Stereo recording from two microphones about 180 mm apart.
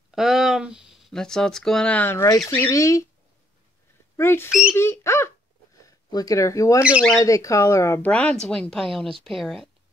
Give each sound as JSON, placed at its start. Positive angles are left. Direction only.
{"t": 0.1, "sound": "speech", "side_deg": 0}
{"t": 4.2, "sound": "speech", "side_deg": 15}
{"t": 6.8, "sound": "speech", "side_deg": -5}
{"t": 7.2, "sound": "speech", "side_deg": 15}